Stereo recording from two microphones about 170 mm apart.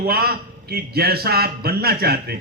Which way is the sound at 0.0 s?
65° right (ahead or behind).